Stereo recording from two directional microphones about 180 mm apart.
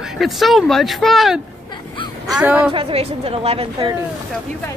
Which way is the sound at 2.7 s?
30° right (ahead or behind).